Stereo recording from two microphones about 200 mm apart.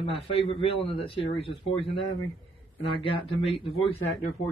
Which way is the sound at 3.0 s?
25° left (ahead or behind).